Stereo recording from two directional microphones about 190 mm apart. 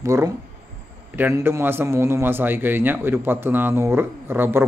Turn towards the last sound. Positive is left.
turn(degrees=-10)  # may be behind; listen again after turning